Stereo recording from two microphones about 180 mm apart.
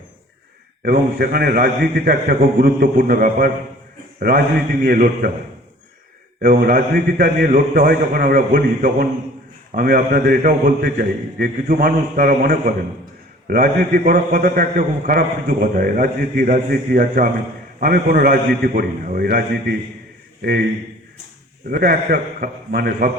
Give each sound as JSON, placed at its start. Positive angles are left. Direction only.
{"t": 0.8, "sound": "a man's voice", "side_deg": -55}
{"t": 6.4, "sound": "a man's voice", "side_deg": -55}
{"t": 21.7, "sound": "a man's voice", "side_deg": -55}